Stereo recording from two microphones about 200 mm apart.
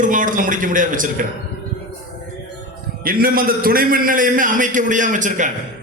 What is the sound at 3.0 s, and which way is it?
A man's voice, 45° right (ahead or behind).